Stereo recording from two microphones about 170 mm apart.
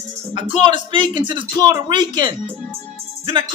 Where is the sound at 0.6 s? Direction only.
25° right (ahead or behind).